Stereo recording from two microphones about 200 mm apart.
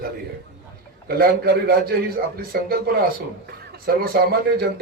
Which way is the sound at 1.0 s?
50° right (ahead or behind).